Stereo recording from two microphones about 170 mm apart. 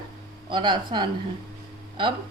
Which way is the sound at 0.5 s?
25° right (ahead or behind).